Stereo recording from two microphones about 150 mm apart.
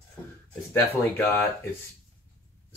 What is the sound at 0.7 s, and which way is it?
Speech, 15° left (ahead or behind).